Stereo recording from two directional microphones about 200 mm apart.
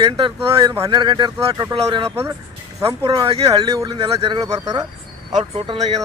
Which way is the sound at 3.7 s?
20° right (ahead or behind).